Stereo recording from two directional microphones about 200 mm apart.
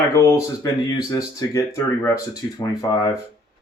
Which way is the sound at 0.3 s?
20° left (ahead or behind).